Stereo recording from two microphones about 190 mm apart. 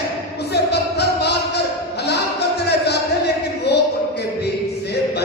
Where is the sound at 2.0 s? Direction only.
60° left (ahead or behind).